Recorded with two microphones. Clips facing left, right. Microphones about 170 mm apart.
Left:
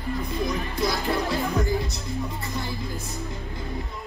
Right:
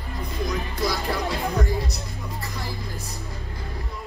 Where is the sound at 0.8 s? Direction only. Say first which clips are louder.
Left 1 dB; centre (ahead or behind).